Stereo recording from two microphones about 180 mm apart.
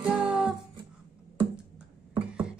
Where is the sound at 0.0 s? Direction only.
10° right (ahead or behind).